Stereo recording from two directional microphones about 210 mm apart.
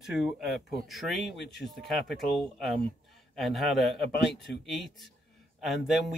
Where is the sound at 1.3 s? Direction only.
55° left (ahead or behind).